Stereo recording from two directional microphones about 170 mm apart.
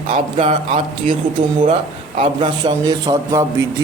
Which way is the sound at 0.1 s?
35° right (ahead or behind).